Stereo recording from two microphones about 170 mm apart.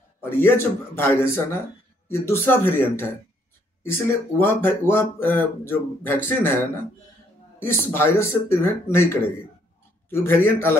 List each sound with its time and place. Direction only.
0.2 s speech: 15° left (ahead or behind)
4.4 s speech: 15° left (ahead or behind)